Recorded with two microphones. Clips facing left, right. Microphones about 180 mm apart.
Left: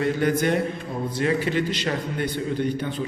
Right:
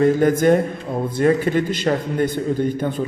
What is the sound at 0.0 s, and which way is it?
A man's voice, 45° right (ahead or behind).